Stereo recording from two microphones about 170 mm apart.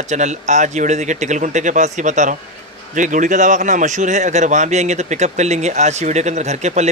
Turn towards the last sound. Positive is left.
turn(degrees=-40)  # may be behind; listen again after turning